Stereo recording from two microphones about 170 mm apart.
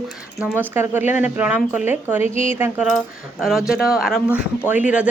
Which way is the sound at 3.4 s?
Centre (ahead or behind).